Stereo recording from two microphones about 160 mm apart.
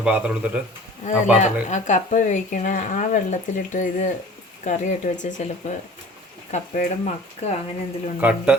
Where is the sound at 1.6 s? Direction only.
50° left (ahead or behind).